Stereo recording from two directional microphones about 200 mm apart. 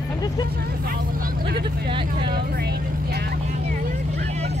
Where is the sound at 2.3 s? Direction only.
55° right (ahead or behind).